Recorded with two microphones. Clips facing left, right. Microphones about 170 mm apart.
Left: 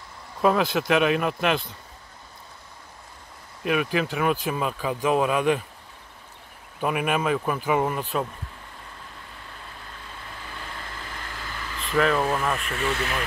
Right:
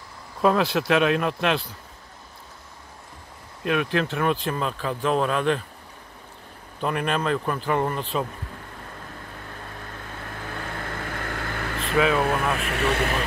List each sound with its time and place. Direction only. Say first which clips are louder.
0.4 s speech: right 1 dB; centre (ahead or behind)
3.6 s speech: even; 5° left (ahead or behind)
6.8 s speech: left 1 dB; 10° left (ahead or behind)
10.2 s vehicle: right 6 dB; 60° right (ahead or behind)
12.0 s speech: right 1 dB; 5° right (ahead or behind)
12.6 s speech: right 3 dB; 75° right (ahead or behind)